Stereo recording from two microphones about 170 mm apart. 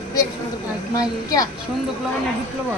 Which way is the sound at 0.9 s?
20° left (ahead or behind).